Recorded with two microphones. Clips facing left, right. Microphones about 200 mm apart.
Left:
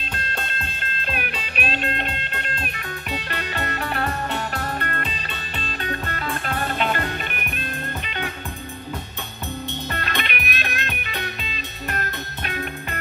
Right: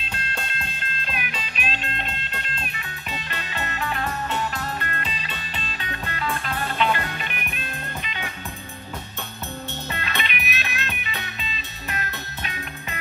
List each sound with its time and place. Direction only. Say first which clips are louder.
1.1 s music: left 5 dB; 60° left (ahead or behind)
9.9 s music: left 2 dB; 55° left (ahead or behind)